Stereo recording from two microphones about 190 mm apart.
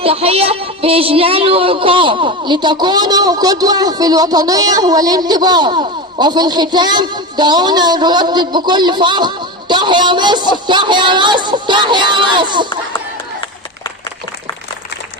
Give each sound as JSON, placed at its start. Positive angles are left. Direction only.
{"t": 0.0, "sound": "speech", "side_deg": -30}